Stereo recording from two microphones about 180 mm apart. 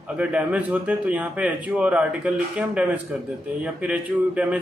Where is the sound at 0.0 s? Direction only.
5° right (ahead or behind).